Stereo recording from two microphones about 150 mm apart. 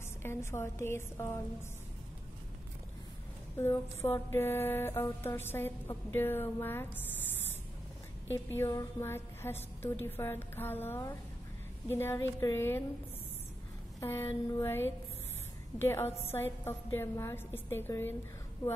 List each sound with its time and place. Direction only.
0.2 s mantra: 15° left (ahead or behind)
3.5 s mantra: 15° left (ahead or behind)
8.3 s mantra: 15° left (ahead or behind)
13.9 s mantra: 15° left (ahead or behind)